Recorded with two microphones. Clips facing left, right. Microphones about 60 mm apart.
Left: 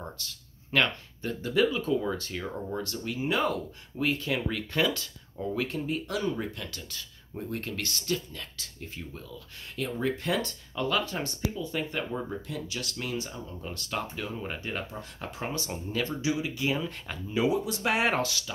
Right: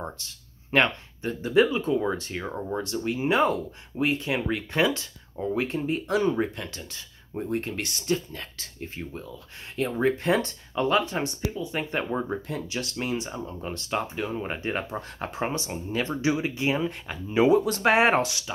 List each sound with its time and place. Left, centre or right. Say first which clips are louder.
0.0 s speech: right 4 dB; right
8.3 s speech: right 3 dB; right
11.9 s speech: right 5 dB; right
13.7 s speech: right 5 dB; right
15.5 s speech: right 3 dB; right
16.2 s speech: right 4 dB; right
17.3 s speech: right 7 dB; right
17.6 s speech: right 7 dB; right
17.9 s speech: right 5 dB; right